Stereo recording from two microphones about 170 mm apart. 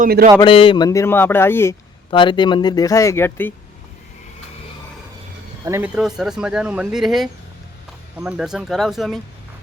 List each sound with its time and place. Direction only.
0.0 s speech: 60° right (ahead or behind)
0.3 s speech: 30° left (ahead or behind); by 1.7 s 15° left (ahead or behind)
2.0 s speech: 30° left (ahead or behind); by 3.5 s 10° left (ahead or behind)
5.6 s speech: 15° right (ahead or behind)
5.9 s speech: centre (ahead or behind)